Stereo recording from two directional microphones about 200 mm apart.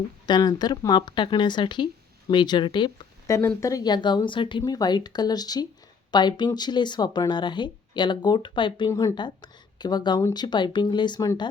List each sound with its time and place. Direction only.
0.3 s speech: 20° left (ahead or behind)